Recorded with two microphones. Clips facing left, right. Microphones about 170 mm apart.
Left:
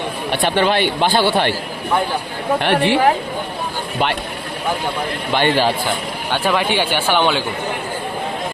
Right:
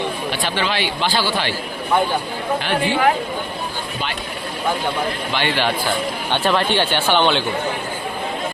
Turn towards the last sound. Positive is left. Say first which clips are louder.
# even
turn(degrees=10)  # may be behind; listen again after turning